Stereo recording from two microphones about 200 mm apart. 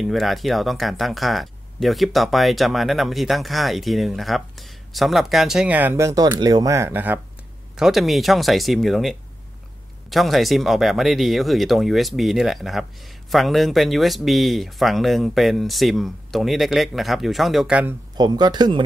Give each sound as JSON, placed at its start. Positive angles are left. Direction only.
{"t": 0.0, "sound": "speech", "side_deg": 0}
{"t": 18.1, "sound": "speech", "side_deg": -20}